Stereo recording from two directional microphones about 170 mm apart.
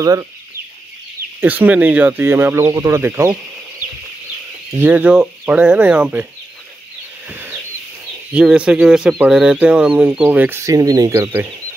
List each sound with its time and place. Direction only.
0.0 s speech: 20° right (ahead or behind)
1.4 s speech: 10° right (ahead or behind)
4.7 s speech: 10° right (ahead or behind)
8.3 s speech: 5° right (ahead or behind)